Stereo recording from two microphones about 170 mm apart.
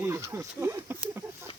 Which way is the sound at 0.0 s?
15° right (ahead or behind).